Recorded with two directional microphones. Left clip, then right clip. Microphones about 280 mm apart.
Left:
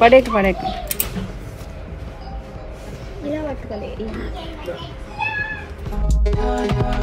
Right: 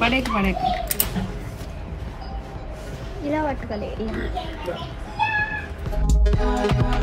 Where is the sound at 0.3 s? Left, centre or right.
Centre.